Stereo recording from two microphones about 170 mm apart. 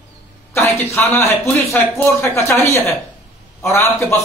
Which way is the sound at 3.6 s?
15° left (ahead or behind).